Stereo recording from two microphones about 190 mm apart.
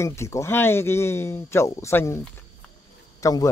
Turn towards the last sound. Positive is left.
turn(degrees=15)  # may be behind; listen again after turning